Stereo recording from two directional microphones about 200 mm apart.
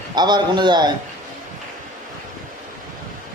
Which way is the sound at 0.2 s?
20° right (ahead or behind).